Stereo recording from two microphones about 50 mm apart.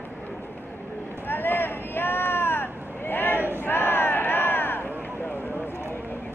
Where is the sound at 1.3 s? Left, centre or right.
Left.